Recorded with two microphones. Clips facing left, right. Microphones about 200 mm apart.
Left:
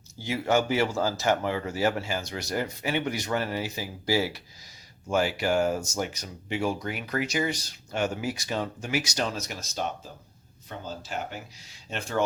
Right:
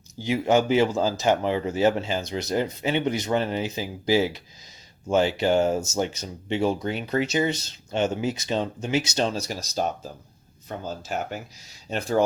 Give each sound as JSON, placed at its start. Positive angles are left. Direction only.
{"t": 0.2, "sound": "speech", "side_deg": -15}